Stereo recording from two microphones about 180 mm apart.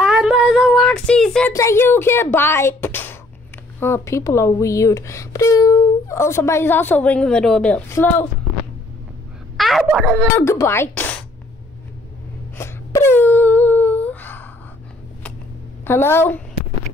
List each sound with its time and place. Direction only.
0.0 s a sound: 5° right (ahead or behind)
1.5 s speech: 15° left (ahead or behind)
9.6 s speech: centre (ahead or behind)
10.3 s speech: 15° left (ahead or behind)
12.5 s wail: 15° left (ahead or behind)
15.8 s speech: 15° left (ahead or behind)